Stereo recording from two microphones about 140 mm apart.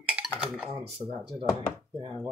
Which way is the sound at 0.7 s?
45° right (ahead or behind).